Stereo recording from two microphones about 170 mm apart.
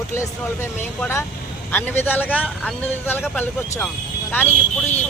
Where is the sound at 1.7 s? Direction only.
10° left (ahead or behind).